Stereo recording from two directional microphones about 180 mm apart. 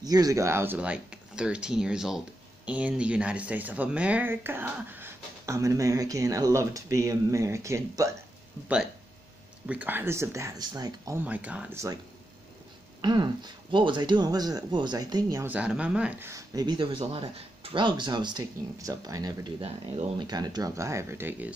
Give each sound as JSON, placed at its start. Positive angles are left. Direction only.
{"t": 0.0, "sound": "speech", "side_deg": -20}
{"t": 9.7, "sound": "speech", "side_deg": -10}
{"t": 11.2, "sound": "speech", "side_deg": -10}
{"t": 13.0, "sound": "speech", "side_deg": -25}
{"t": 15.5, "sound": "speech", "side_deg": -5}